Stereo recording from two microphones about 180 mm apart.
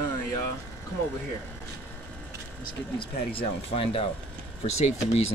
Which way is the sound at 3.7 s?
30° left (ahead or behind).